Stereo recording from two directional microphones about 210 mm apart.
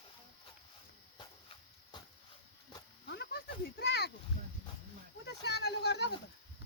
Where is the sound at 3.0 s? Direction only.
50° left (ahead or behind).